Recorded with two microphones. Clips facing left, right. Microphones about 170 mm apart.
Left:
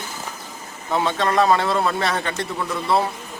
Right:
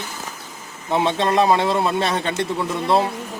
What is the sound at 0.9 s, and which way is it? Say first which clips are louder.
Speech: right 2 dB; 20° right (ahead or behind).